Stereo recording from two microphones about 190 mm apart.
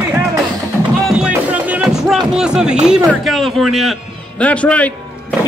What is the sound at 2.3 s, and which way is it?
A man's voice, 5° right (ahead or behind).